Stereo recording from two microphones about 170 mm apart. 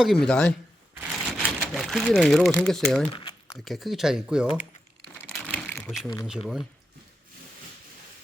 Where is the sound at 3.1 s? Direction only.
30° left (ahead or behind).